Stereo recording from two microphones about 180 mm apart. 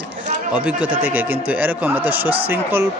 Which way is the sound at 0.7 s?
10° right (ahead or behind).